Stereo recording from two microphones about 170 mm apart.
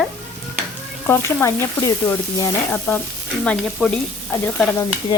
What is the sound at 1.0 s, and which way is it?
Frying, 15° left (ahead or behind).